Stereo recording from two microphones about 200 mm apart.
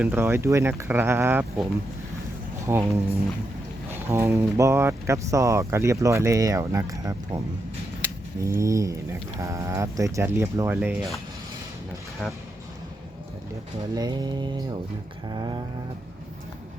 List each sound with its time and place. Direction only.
0.0 s speech: 10° right (ahead or behind)
2.7 s speech: 15° right (ahead or behind)
3.9 s speech: 10° right (ahead or behind)
13.9 s a sound: 20° right (ahead or behind)